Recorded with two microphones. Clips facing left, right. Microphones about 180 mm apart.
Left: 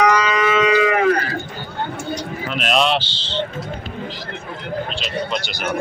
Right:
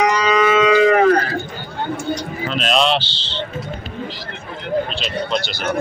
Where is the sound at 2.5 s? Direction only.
5° left (ahead or behind).